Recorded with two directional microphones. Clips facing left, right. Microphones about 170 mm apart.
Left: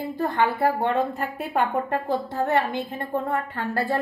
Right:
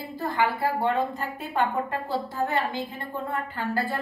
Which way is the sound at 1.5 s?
55° left (ahead or behind).